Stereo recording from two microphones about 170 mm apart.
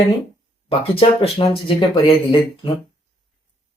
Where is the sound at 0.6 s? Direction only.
35° left (ahead or behind).